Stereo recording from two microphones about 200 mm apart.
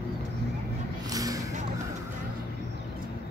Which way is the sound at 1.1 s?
15° right (ahead or behind).